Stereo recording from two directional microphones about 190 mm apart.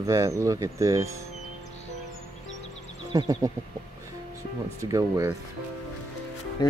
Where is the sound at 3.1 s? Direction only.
20° right (ahead or behind).